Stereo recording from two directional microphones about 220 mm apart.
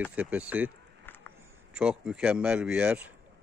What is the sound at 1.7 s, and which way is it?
Speech, 5° right (ahead or behind).